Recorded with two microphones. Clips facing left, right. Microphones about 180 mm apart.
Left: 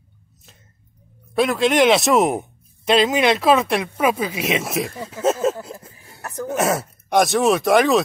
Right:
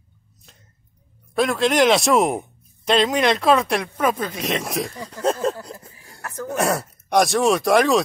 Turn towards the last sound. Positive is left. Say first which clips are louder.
# left 1 dB
turn(degrees=0)  # may be behind; listen again after turning